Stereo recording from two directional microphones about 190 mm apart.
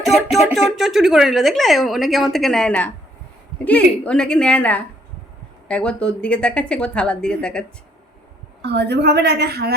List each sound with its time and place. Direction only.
0.0 s a woman's voice: centre (ahead or behind)
8.6 s a woman's voice: 60° right (ahead or behind)